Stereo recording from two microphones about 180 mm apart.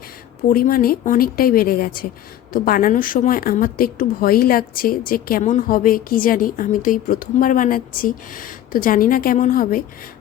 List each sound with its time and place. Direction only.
0.4 s a woman's voice: 50° left (ahead or behind)